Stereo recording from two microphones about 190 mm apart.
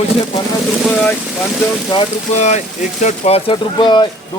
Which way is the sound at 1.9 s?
30° left (ahead or behind).